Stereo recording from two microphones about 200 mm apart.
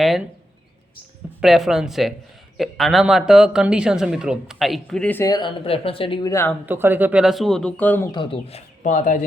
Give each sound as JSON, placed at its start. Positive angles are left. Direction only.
{"t": 1.4, "sound": "speech", "side_deg": 0}
{"t": 6.7, "sound": "speech", "side_deg": -10}
{"t": 8.1, "sound": "speech", "side_deg": 25}